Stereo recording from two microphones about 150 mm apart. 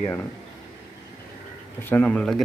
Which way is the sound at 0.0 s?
15° left (ahead or behind).